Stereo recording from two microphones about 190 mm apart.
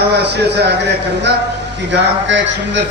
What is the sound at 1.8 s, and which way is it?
Speech, 70° right (ahead or behind).